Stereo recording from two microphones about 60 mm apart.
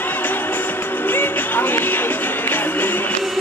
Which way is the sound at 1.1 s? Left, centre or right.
Left.